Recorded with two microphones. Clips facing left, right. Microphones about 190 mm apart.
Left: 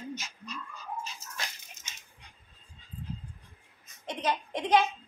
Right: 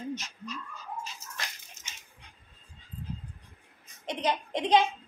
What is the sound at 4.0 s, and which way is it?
Speech, 15° right (ahead or behind).